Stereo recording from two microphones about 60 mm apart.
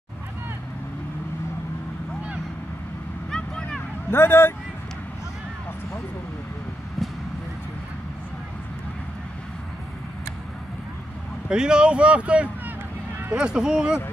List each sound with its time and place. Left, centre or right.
3.3 s vehicle: centre
4.1 s a man's voice: left
7.0 s vehicle: centre
11.4 s speech: centre